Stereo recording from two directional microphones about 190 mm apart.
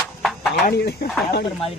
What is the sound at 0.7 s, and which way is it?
Speech, 60° left (ahead or behind).